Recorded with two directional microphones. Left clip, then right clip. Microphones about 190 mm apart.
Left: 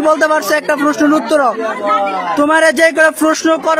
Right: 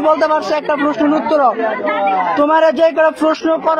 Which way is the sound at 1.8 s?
20° left (ahead or behind).